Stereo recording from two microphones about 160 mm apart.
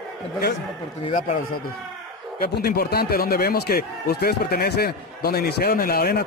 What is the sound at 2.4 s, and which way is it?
Speech, 75° left (ahead or behind).